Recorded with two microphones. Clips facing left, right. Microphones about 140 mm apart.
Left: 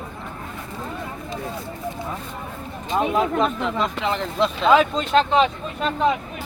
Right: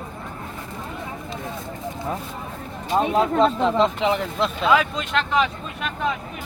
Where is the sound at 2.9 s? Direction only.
30° right (ahead or behind).